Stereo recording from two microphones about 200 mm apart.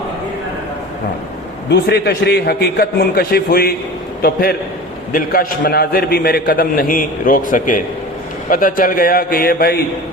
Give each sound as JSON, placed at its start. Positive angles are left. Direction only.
{"t": 1.7, "sound": "a man's voice", "side_deg": 55}